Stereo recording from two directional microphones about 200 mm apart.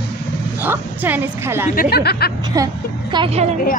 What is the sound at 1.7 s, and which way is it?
Speech, 50° left (ahead or behind).